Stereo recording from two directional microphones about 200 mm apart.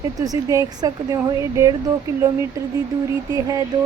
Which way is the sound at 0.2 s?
20° right (ahead or behind).